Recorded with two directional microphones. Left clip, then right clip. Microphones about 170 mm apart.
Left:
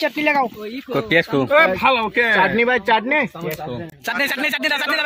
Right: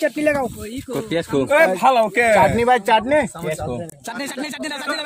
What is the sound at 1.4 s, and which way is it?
Speech, 40° right (ahead or behind).